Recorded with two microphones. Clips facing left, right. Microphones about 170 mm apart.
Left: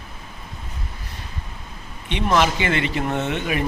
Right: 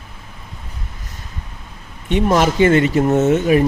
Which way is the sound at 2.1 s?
45° right (ahead or behind).